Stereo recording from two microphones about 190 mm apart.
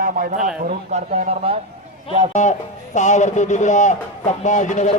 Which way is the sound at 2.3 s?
40° left (ahead or behind).